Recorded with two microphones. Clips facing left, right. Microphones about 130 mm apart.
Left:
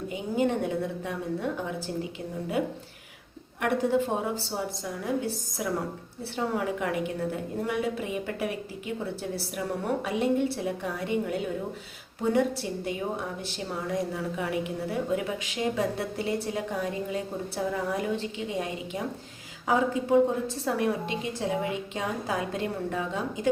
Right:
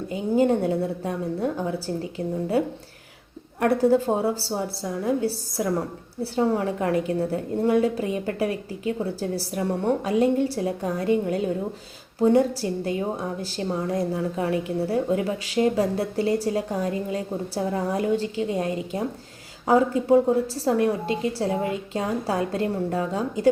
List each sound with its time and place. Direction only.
0.1 s a woman's voice: 35° right (ahead or behind)
3.6 s a woman's voice: 35° right (ahead or behind)